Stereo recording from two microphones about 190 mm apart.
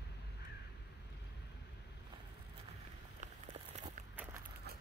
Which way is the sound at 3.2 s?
40° right (ahead or behind).